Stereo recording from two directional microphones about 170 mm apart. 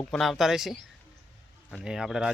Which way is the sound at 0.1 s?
Centre (ahead or behind).